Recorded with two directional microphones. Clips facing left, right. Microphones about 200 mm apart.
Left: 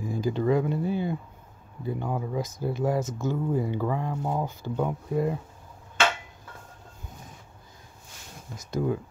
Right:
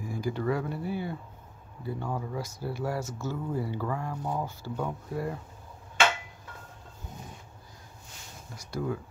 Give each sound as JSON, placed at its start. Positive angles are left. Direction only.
{"t": 0.0, "sound": "speech", "side_deg": 20}
{"t": 8.5, "sound": "speech", "side_deg": 20}